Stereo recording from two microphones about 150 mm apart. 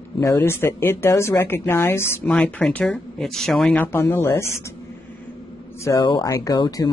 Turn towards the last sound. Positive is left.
turn(degrees=25)  # may be behind; listen again after turning